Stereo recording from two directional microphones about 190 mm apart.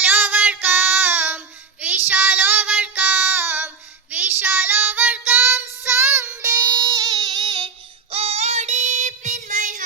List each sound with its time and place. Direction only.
0.0 s child singing: 10° right (ahead or behind)
8.1 s child singing: 35° right (ahead or behind)